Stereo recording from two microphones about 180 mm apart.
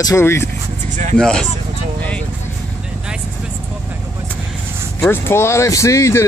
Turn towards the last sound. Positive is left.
turn(degrees=15)  # may be behind; listen again after turning